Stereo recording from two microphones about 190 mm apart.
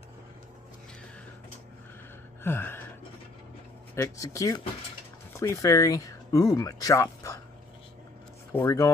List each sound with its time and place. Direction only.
2.4 s a sound: 10° left (ahead or behind)
3.9 s speech: 15° left (ahead or behind)
8.5 s speech: 15° left (ahead or behind)